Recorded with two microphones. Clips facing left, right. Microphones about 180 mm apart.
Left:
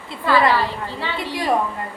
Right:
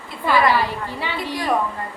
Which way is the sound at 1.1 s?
20° left (ahead or behind).